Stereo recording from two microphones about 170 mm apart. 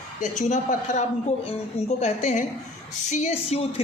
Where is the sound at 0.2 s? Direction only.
45° left (ahead or behind).